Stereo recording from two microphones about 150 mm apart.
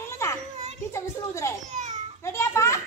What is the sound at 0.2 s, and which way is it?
Children playing, 15° left (ahead or behind).